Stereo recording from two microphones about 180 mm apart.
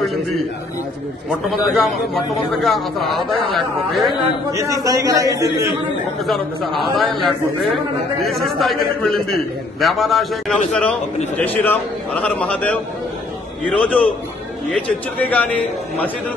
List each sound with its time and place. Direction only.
1.5 s a man's voice: centre (ahead or behind)
4.5 s a man's voice: 15° right (ahead or behind)
6.2 s a man's voice: centre (ahead or behind)